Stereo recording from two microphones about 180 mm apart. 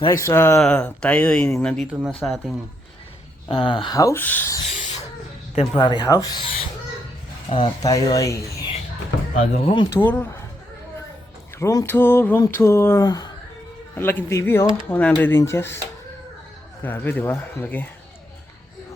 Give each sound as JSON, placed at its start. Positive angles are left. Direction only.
{"t": 0.1, "sound": "speech", "side_deg": 15}
{"t": 3.5, "sound": "speech", "side_deg": 25}
{"t": 5.5, "sound": "speech", "side_deg": 25}
{"t": 7.5, "sound": "speech", "side_deg": 25}
{"t": 9.3, "sound": "speech", "side_deg": 35}
{"t": 9.9, "sound": "speech", "side_deg": 10}
{"t": 11.6, "sound": "speech", "side_deg": 15}
{"t": 16.8, "sound": "speech", "side_deg": 10}